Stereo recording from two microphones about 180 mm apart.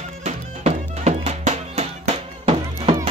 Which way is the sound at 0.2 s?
35° right (ahead or behind).